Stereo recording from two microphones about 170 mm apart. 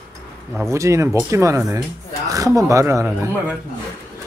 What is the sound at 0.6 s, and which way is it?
Speech, 15° right (ahead or behind).